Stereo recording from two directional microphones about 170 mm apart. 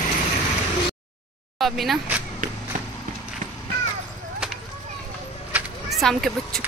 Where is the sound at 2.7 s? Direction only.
50° right (ahead or behind).